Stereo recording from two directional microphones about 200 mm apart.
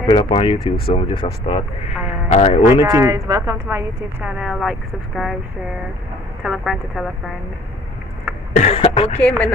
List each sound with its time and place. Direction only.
0.0 s speech: 25° left (ahead or behind)
2.8 s speech: 15° right (ahead or behind)
3.6 s speech: 5° right (ahead or behind)
6.4 s speech: centre (ahead or behind)
8.5 s cough: 35° left (ahead or behind)